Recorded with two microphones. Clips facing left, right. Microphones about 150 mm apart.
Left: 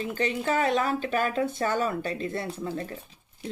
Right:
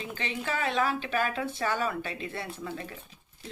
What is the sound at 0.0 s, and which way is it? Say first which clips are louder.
Speech: left 7 dB; 40° left (ahead or behind).